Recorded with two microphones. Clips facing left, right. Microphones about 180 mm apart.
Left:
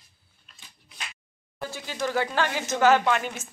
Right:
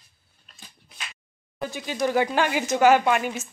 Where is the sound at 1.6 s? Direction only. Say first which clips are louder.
Right 4 dB; 15° right (ahead or behind).